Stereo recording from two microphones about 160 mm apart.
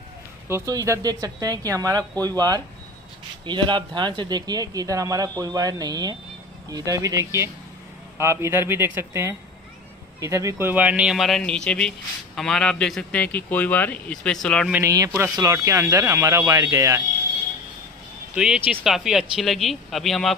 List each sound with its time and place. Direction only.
0.5 s a man's voice: 20° right (ahead or behind); by 14.7 s 5° left (ahead or behind)
14.7 s speech: 20° right (ahead or behind)
18.3 s a man's voice: 5° right (ahead or behind)